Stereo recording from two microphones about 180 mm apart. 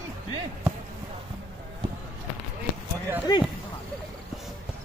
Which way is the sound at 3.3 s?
20° left (ahead or behind).